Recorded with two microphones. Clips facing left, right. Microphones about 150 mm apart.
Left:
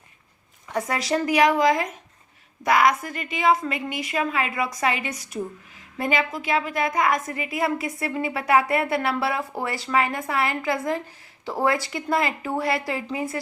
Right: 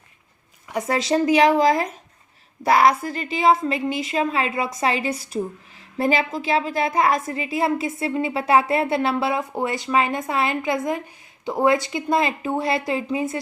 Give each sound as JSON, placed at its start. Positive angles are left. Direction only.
{"t": 0.9, "sound": "a woman's voice", "side_deg": -25}